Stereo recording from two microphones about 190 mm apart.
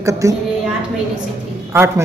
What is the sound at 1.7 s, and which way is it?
Speech, 15° right (ahead or behind).